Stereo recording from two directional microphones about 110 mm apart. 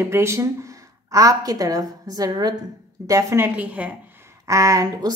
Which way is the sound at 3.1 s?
30° right (ahead or behind).